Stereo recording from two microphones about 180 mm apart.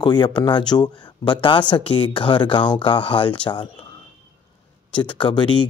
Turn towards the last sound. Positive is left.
turn(degrees=25)  # may be behind; listen again after turning